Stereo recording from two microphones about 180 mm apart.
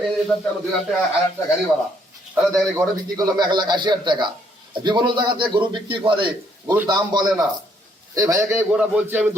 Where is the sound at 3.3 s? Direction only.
25° right (ahead or behind).